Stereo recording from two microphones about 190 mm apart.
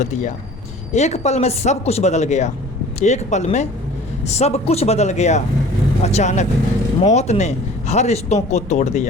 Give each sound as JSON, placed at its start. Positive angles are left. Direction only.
{"t": 0.0, "sound": "speech", "side_deg": 40}